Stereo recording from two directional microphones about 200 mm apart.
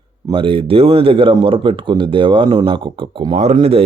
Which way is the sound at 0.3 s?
25° right (ahead or behind).